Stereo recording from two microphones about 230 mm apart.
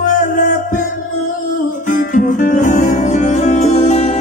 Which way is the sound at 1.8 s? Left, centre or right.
Left.